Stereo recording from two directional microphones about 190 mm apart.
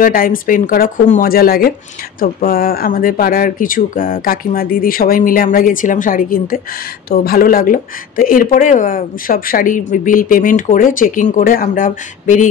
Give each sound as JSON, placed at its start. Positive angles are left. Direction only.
{"t": 0.0, "sound": "speech", "side_deg": 50}